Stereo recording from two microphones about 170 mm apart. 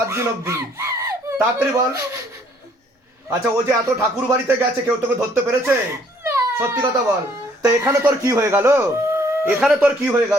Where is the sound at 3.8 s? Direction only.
15° right (ahead or behind).